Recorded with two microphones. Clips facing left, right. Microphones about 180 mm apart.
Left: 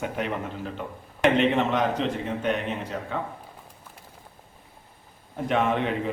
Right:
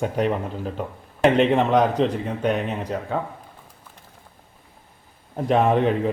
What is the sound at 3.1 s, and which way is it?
Speech, 40° right (ahead or behind).